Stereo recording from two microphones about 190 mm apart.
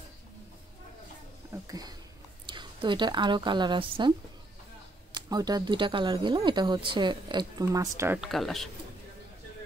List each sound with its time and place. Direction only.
1.5 s a woman's voice: 20° right (ahead or behind)
5.1 s speech: 20° right (ahead or behind)
8.2 s speech: centre (ahead or behind)